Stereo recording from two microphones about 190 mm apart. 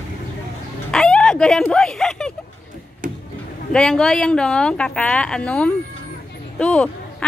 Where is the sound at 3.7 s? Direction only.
5° left (ahead or behind).